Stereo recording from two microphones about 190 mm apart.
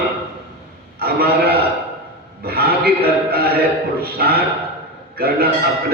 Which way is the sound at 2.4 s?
55° right (ahead or behind).